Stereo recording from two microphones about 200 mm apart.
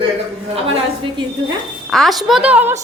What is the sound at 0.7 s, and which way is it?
Speech, 25° right (ahead or behind).